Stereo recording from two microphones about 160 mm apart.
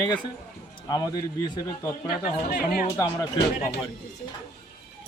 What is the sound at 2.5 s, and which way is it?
Speech, 65° left (ahead or behind).